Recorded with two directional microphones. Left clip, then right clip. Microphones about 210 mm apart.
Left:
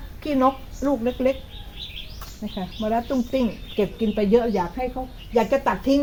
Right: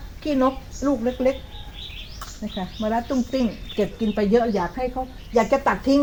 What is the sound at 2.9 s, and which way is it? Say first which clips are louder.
Speech: even; 25° left (ahead or behind).